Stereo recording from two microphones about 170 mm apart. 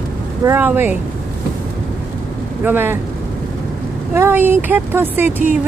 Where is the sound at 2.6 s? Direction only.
10° right (ahead or behind).